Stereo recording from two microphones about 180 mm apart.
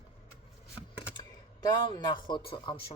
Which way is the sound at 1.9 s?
25° left (ahead or behind).